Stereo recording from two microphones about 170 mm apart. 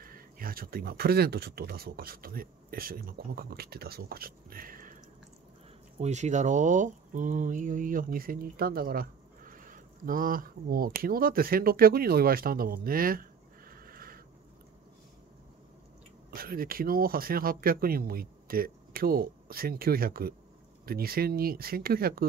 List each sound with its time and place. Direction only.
0.0 s speech: 55° right (ahead or behind)
5.9 s speech: 45° right (ahead or behind); by 14.2 s 60° right (ahead or behind)
16.3 s speech: 60° right (ahead or behind)